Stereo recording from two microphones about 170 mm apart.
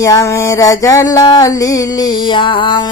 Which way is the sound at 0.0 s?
20° left (ahead or behind).